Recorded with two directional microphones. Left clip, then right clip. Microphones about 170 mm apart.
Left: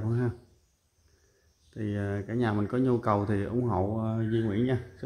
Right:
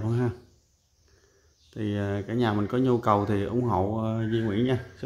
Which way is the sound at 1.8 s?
10° right (ahead or behind).